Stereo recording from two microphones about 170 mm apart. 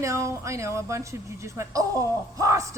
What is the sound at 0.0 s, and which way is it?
Speech, 20° right (ahead or behind).